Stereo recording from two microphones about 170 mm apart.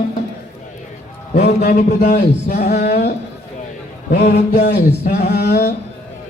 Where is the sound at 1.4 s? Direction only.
65° left (ahead or behind).